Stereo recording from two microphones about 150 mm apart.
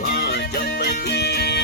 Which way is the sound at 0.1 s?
90° left.